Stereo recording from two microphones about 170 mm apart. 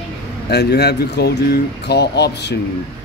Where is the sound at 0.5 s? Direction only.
75° left (ahead or behind).